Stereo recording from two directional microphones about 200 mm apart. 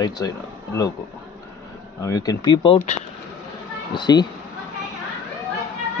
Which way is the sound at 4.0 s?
20° left (ahead or behind).